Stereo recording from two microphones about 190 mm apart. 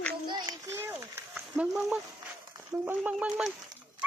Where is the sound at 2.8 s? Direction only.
5° right (ahead or behind).